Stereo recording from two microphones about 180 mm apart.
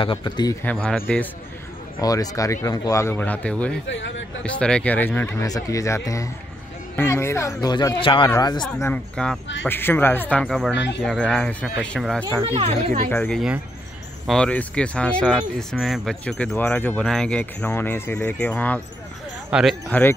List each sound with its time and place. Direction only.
0.0 s speech: 25° left (ahead or behind)
0.8 s speech: 5° left (ahead or behind)
2.0 s speech: 20° left (ahead or behind)
3.8 s speech: 90° left
4.4 s speech: 5° left (ahead or behind); by 8.6 s 20° left (ahead or behind)
8.7 s speech: 10° left (ahead or behind)
12.4 s speech: 30° right (ahead or behind)
13.1 s speech: 10° left (ahead or behind)